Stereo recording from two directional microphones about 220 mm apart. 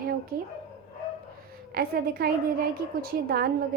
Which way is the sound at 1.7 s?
45° right (ahead or behind).